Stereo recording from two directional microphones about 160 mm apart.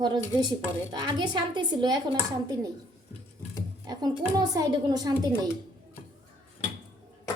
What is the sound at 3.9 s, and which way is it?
A woman's voice, 25° right (ahead or behind).